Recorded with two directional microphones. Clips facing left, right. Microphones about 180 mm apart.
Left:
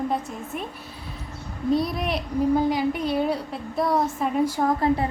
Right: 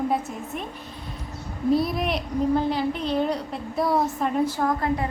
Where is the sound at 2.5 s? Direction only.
10° left (ahead or behind).